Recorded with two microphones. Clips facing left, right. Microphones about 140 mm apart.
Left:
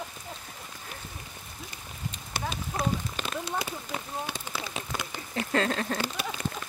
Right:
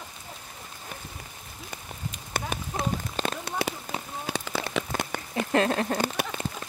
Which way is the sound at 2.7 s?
20° right (ahead or behind).